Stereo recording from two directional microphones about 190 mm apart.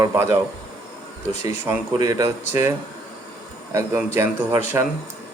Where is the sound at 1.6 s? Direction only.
20° right (ahead or behind).